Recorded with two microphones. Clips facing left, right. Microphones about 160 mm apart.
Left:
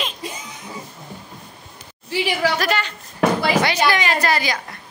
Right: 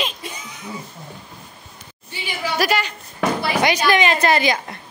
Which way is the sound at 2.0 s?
90° left.